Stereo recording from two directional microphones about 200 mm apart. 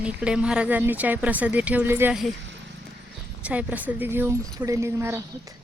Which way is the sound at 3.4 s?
5° right (ahead or behind).